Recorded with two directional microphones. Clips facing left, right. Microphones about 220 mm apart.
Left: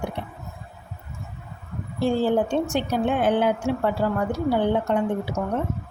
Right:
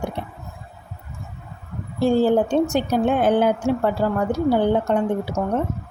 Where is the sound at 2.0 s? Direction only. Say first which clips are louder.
Right 4 dB; 40° right (ahead or behind).